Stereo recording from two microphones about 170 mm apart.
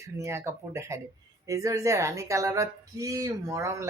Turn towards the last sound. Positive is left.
turn(degrees=-15)  # may be behind; listen again after turning